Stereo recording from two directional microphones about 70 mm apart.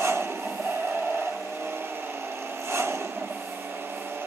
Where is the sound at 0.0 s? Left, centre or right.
Right.